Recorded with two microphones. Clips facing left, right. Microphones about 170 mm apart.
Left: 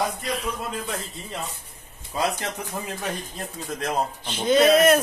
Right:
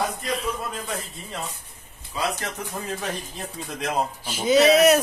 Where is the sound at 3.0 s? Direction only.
Centre (ahead or behind).